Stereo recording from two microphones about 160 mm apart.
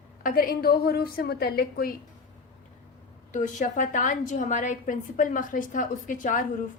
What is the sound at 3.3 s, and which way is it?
A woman's voice, 50° left (ahead or behind).